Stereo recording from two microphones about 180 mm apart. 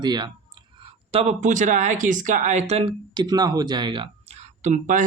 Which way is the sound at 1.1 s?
35° right (ahead or behind).